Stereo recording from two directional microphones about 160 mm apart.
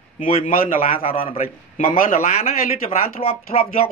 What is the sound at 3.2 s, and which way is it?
Speech, 35° left (ahead or behind).